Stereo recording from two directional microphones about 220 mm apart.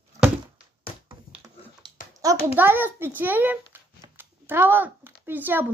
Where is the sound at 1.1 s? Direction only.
20° right (ahead or behind).